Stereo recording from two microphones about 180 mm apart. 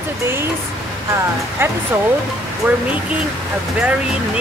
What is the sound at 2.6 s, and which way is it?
Speech, 10° right (ahead or behind).